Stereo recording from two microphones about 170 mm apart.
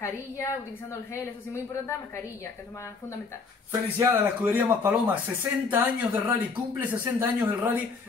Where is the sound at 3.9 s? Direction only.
15° right (ahead or behind).